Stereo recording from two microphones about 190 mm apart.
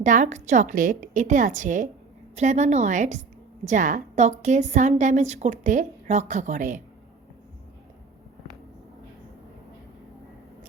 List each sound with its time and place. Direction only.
0.0 s a woman's voice: 40° right (ahead or behind)